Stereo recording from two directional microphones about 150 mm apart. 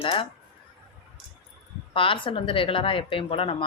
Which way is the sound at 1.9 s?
35° left (ahead or behind).